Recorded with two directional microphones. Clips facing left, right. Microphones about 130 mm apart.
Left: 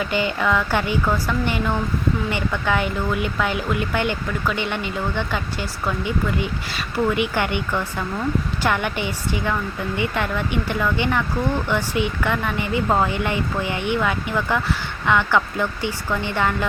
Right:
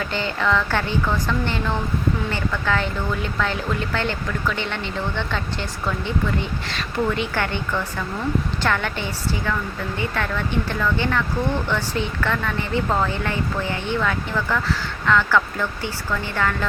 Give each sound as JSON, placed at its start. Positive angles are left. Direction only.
{"t": 0.0, "sound": "speech", "side_deg": 15}